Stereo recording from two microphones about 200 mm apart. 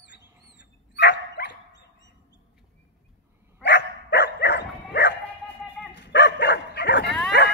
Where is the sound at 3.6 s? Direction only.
60° left (ahead or behind).